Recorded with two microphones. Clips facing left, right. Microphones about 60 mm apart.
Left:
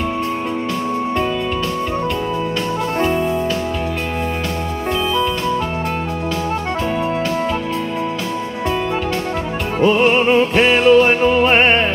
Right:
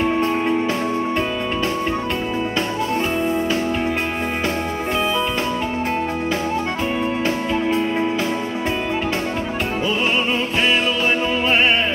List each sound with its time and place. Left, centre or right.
9.8 s music: left